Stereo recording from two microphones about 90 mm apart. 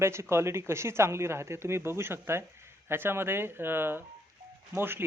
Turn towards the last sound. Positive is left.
turn(degrees=-25)  # may be behind; listen again after turning